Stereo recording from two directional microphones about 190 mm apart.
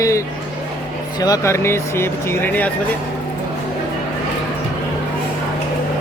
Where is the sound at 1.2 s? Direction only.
15° left (ahead or behind).